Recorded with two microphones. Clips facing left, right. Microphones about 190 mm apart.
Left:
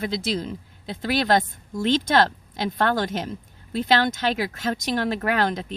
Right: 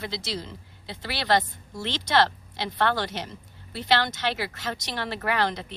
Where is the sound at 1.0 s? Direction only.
45° left (ahead or behind).